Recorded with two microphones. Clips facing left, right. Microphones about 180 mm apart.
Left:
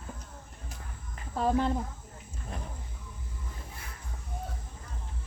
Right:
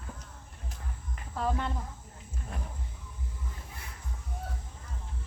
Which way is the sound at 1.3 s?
35° left (ahead or behind).